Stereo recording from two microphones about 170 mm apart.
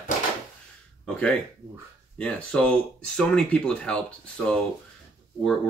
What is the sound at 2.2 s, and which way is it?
Speech, 5° left (ahead or behind).